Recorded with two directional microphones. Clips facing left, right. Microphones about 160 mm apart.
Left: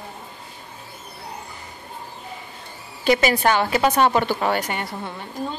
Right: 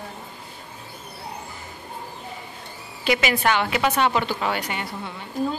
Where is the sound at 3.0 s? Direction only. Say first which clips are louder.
Left 4 dB; 40° left (ahead or behind).